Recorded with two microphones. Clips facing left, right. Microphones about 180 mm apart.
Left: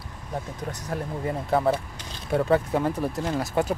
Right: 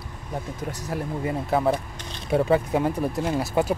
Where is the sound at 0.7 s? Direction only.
5° right (ahead or behind).